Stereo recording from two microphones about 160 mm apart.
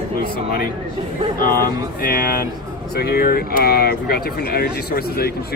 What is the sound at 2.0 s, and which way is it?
Speech, 65° left (ahead or behind).